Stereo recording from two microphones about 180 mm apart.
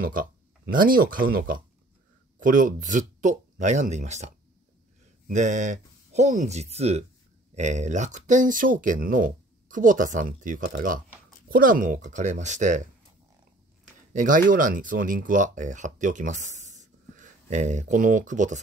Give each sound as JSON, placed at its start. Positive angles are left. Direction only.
{"t": 0.0, "sound": "speech", "side_deg": -50}
{"t": 5.3, "sound": "speech", "side_deg": -45}
{"t": 14.1, "sound": "speech", "side_deg": -45}